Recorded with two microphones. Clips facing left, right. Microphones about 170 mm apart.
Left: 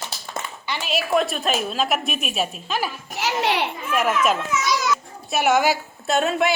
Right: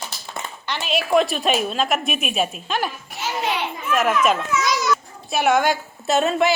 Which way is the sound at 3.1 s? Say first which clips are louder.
Left 3 dB; 85° left.